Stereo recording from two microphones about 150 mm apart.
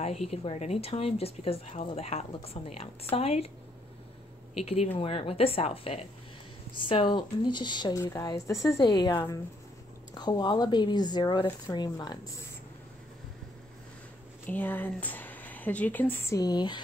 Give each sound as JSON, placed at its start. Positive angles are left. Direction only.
{"t": 0.0, "sound": "speech", "side_deg": 45}
{"t": 4.9, "sound": "speech", "side_deg": 40}
{"t": 14.5, "sound": "speech", "side_deg": 15}